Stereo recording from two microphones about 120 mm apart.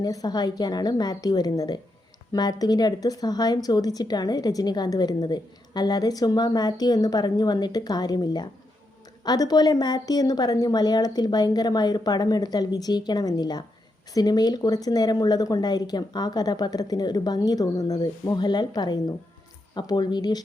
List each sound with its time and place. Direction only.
0.0 s a woman's voice: 30° left (ahead or behind)